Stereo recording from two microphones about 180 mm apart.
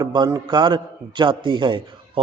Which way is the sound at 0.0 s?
20° right (ahead or behind).